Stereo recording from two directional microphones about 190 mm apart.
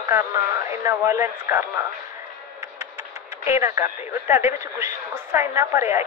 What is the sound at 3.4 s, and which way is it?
A woman's voice, 15° right (ahead or behind).